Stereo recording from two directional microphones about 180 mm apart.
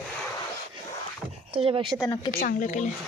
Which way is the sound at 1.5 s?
30° right (ahead or behind).